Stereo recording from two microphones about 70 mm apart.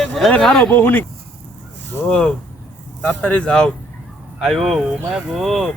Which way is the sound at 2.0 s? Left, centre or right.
Centre.